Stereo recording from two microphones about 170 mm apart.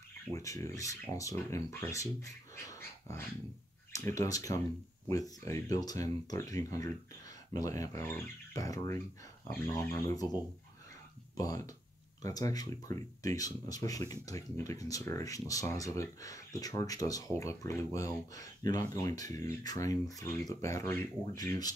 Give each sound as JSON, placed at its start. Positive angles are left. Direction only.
{"t": 0.3, "sound": "speech", "side_deg": 20}
{"t": 2.5, "sound": "dog", "side_deg": 15}
{"t": 3.9, "sound": "speech", "side_deg": 20}
{"t": 11.3, "sound": "speech", "side_deg": 20}